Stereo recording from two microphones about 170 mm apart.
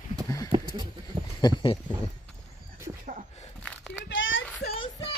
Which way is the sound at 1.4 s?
25° left (ahead or behind).